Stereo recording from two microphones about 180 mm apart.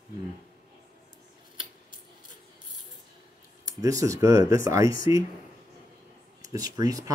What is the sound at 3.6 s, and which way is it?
Speech, 20° right (ahead or behind).